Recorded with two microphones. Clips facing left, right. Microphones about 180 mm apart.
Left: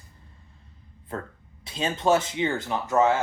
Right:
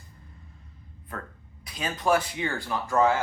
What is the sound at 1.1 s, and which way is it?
Speech, 25° left (ahead or behind).